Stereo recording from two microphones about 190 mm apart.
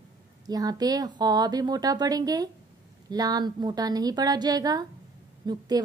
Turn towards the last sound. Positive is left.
turn(degrees=-20)  # may be behind; listen again after turning